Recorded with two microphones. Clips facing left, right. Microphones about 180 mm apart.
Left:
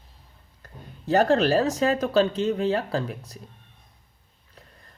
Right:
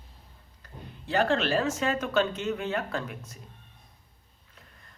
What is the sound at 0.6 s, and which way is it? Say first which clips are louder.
Speech: left 4 dB; 40° left (ahead or behind).